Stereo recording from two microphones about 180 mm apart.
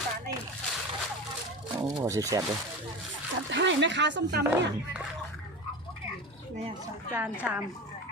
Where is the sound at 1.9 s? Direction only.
20° right (ahead or behind).